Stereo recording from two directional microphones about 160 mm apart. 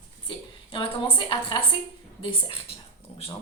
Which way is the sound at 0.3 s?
30° left (ahead or behind).